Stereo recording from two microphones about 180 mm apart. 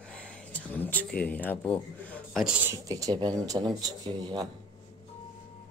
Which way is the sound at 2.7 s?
20° right (ahead or behind).